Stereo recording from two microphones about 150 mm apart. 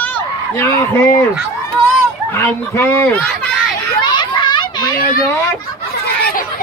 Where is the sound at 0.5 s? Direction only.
15° left (ahead or behind).